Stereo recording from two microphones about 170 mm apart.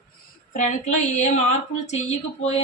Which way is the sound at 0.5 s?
45° left (ahead or behind).